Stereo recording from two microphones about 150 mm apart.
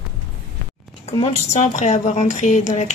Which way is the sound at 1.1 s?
45° left (ahead or behind).